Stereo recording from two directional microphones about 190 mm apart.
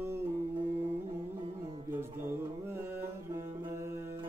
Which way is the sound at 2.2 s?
10° right (ahead or behind).